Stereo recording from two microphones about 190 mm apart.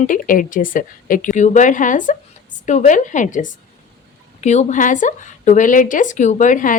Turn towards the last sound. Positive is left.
turn(degrees=45)  # may be behind; listen again after turning